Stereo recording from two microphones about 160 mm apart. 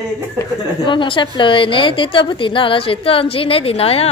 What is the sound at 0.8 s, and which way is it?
A woman's voice, 30° left (ahead or behind).